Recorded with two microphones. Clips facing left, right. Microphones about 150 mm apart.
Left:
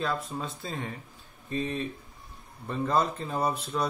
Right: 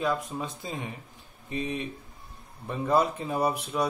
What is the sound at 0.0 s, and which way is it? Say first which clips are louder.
A man's voice: right 2 dB; 15° right (ahead or behind).